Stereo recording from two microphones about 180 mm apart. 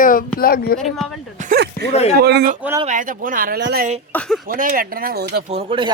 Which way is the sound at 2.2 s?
60° right (ahead or behind).